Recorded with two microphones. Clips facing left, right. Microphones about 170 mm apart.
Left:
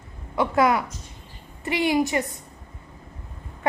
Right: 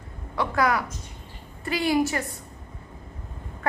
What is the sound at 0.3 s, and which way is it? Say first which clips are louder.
A woman's voice: left 3 dB; 25° left (ahead or behind).